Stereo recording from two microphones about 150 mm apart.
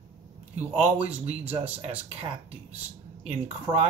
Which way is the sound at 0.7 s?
45° right (ahead or behind).